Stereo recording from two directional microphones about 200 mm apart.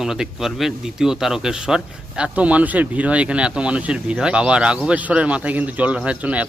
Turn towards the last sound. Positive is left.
turn(degrees=-5)  # may be behind; listen again after turning